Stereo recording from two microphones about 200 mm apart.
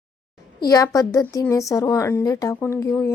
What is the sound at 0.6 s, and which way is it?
Speech, 15° left (ahead or behind).